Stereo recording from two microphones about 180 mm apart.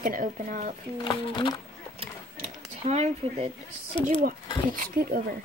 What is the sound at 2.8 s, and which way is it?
Speech, 40° right (ahead or behind).